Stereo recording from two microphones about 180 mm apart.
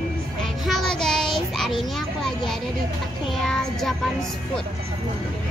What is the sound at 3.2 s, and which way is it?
Child singing, centre (ahead or behind).